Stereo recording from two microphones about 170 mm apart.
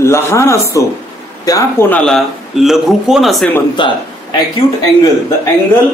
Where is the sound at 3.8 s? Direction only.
30° left (ahead or behind).